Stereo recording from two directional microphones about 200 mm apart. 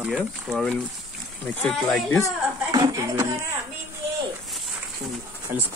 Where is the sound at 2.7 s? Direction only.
15° right (ahead or behind).